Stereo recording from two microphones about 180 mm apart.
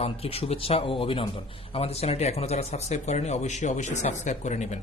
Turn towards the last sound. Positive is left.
turn(degrees=40)  # may be behind; listen again after turning